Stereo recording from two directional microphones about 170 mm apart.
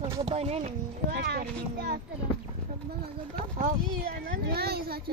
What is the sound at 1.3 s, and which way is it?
Speech, 65° right (ahead or behind).